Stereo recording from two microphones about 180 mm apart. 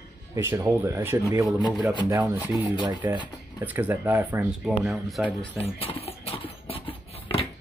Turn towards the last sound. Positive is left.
turn(degrees=30)  # may be behind; listen again after turning